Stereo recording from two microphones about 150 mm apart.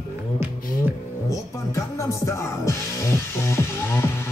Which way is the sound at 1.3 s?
20° left (ahead or behind).